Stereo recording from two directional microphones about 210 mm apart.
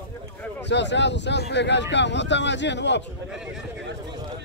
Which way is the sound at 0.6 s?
55° left (ahead or behind).